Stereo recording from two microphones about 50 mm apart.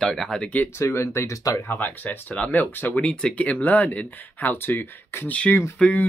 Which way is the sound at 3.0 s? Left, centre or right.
Centre.